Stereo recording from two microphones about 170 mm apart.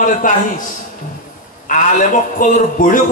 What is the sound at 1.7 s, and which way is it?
A man's voice, 50° left (ahead or behind).